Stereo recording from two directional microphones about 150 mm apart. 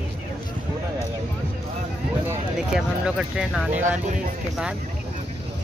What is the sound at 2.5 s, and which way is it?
Speech, 5° right (ahead or behind).